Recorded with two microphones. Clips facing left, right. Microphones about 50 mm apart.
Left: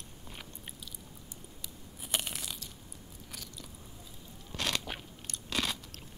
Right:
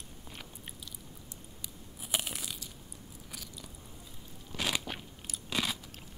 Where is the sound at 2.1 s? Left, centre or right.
Centre.